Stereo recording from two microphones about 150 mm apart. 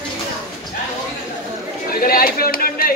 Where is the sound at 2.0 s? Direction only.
75° left (ahead or behind).